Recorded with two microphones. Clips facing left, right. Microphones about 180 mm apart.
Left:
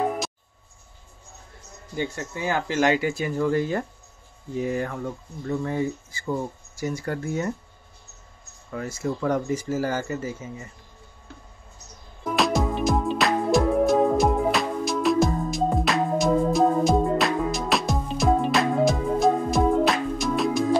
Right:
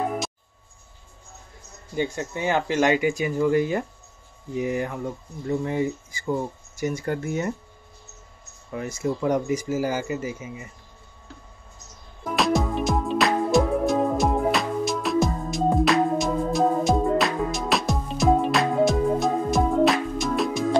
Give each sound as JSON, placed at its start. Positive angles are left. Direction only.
{"t": 2.0, "sound": "speech", "side_deg": -20}
{"t": 8.7, "sound": "speech", "side_deg": -20}
{"t": 12.4, "sound": "music", "side_deg": 0}